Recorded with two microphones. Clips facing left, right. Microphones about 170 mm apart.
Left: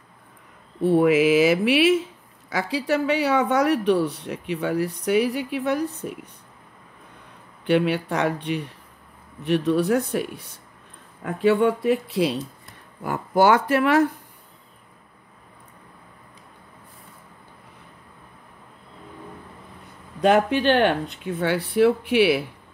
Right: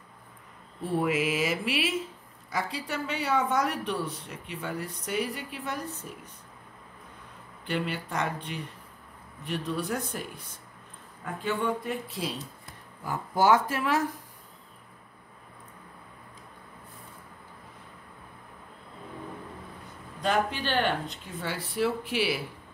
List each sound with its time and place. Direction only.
0.8 s speech: 70° left (ahead or behind)
7.6 s speech: 70° left (ahead or behind)
20.2 s speech: 65° left (ahead or behind)